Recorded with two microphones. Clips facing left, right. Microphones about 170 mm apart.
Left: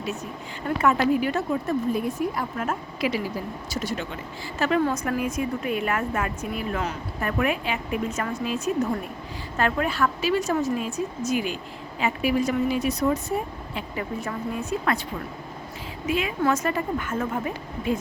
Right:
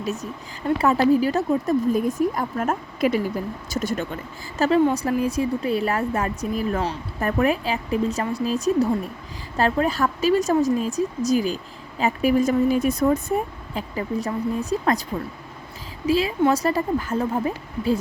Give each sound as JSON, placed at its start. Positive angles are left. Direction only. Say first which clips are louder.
{"t": 0.0, "sound": "a woman's voice", "louder": "right 3 dB", "side_deg": -40}
{"t": 4.8, "sound": "speech", "louder": "right 5 dB", "side_deg": -20}
{"t": 5.2, "sound": "a woman's voice", "louder": "right 4 dB", "side_deg": -35}
{"t": 13.7, "sound": "a woman's voice", "louder": "right 5 dB", "side_deg": -35}
{"t": 16.0, "sound": "a woman's voice", "louder": "right 5 dB", "side_deg": -35}